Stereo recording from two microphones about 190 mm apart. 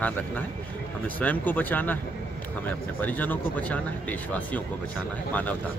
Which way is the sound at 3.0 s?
10° left (ahead or behind).